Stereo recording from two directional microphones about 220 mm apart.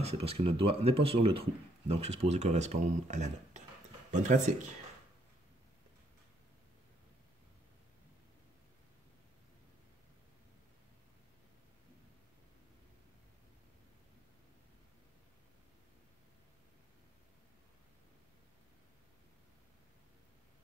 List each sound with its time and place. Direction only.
0.0 s speech: 25° right (ahead or behind)